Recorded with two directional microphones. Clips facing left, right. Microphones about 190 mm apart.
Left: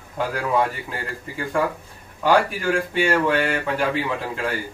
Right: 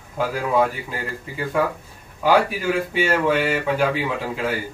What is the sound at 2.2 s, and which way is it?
A man's voice, 5° right (ahead or behind).